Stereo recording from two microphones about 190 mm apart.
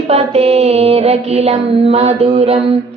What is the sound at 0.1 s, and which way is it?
A woman's voice, 30° right (ahead or behind).